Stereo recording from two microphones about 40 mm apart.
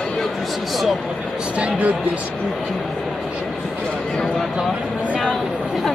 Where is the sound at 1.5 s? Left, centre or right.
Right.